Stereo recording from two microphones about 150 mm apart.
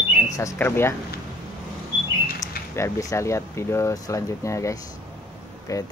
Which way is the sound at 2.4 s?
20° left (ahead or behind).